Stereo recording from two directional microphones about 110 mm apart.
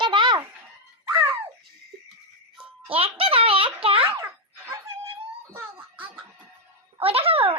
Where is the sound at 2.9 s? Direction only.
60° right (ahead or behind).